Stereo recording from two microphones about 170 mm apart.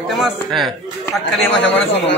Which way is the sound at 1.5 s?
90° left.